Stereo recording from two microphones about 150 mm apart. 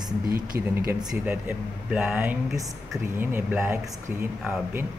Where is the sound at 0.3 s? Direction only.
80° right.